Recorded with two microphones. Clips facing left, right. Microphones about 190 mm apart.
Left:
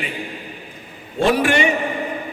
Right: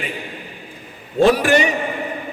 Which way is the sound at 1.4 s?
40° right (ahead or behind).